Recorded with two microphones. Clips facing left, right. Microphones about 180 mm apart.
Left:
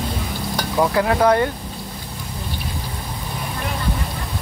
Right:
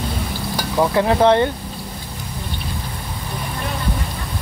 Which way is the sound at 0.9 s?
25° right (ahead or behind).